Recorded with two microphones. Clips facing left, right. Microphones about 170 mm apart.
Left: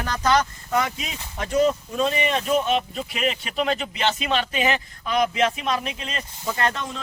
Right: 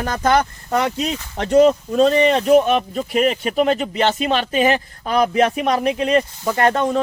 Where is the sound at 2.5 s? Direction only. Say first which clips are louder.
Right 7 dB; 55° right (ahead or behind).